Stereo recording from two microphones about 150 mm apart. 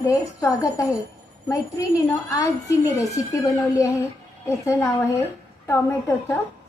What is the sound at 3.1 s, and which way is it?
A woman's voice, 20° left (ahead or behind).